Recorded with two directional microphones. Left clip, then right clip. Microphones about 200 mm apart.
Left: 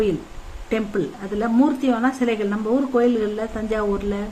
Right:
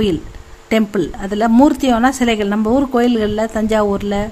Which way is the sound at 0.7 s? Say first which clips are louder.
Right 7 dB; 60° right (ahead or behind).